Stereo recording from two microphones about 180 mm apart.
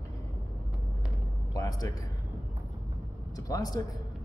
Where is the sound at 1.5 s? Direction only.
20° left (ahead or behind).